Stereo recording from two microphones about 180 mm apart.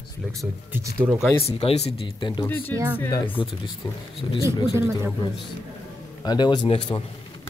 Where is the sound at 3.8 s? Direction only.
25° left (ahead or behind).